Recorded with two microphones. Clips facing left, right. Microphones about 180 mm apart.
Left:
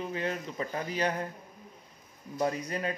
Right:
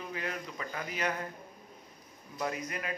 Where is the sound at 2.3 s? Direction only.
30° left (ahead or behind).